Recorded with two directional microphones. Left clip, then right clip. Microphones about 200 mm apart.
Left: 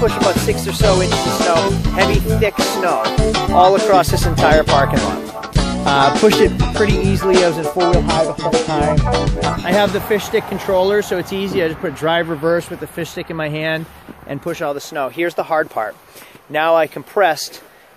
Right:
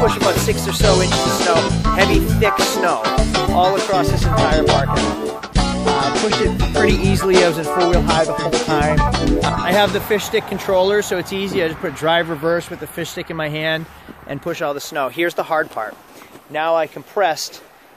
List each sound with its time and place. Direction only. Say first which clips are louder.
0.0 s speech: left 1 dB; centre (ahead or behind)
4.2 s music: left 3 dB; centre (ahead or behind)
7.1 s speech: even; 5° right (ahead or behind)
16.5 s speech: left 4 dB; 35° left (ahead or behind)
17.2 s speech: left 3 dB; 20° left (ahead or behind)